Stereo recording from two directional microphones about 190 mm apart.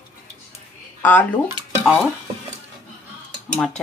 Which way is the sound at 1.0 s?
10° left (ahead or behind).